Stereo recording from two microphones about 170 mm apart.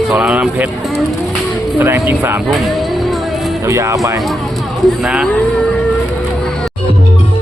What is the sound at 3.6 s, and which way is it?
Speech, 15° right (ahead or behind).